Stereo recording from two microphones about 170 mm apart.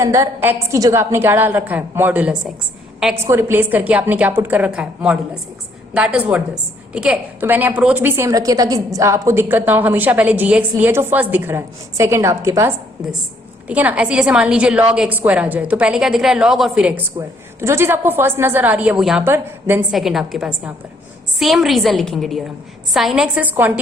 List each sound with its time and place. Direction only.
0.0 s a woman's voice: 20° right (ahead or behind)
19.9 s a woman's voice: centre (ahead or behind)